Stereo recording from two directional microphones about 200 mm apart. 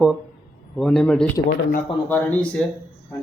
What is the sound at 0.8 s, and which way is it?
Speech, 5° left (ahead or behind).